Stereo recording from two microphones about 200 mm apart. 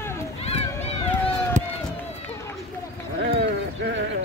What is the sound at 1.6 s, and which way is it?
Run, 35° right (ahead or behind).